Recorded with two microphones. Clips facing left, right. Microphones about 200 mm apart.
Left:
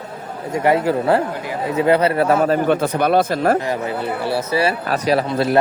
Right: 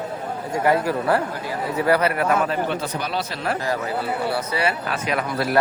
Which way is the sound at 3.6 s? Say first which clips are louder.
Left 3 dB; 20° left (ahead or behind).